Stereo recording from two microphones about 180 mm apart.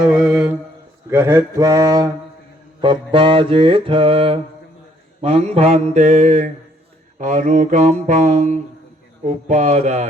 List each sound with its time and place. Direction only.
0.0 s mantra: 5° right (ahead or behind); by 10.1 s 40° right (ahead or behind)